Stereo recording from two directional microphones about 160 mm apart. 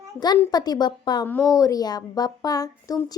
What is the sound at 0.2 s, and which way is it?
A woman's voice, 25° left (ahead or behind).